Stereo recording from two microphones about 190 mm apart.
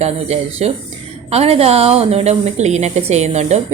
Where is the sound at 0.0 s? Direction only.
35° right (ahead or behind).